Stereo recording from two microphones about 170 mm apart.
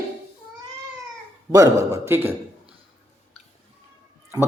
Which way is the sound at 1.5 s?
20° right (ahead or behind).